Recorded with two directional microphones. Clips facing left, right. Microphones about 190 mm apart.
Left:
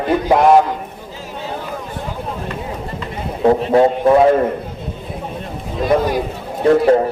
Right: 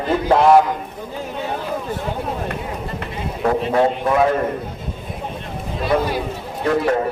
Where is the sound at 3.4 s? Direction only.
30° left (ahead or behind).